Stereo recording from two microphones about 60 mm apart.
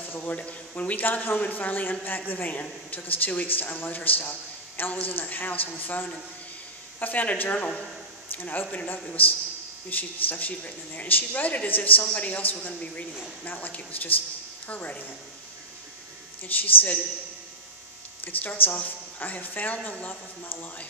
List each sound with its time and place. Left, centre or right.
0.0 s speech: left
16.4 s speech: left
18.2 s speech: left